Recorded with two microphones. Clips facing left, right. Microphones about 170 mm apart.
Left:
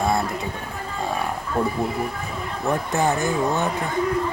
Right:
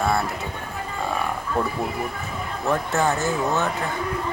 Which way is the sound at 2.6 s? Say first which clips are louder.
Even; 15° left (ahead or behind).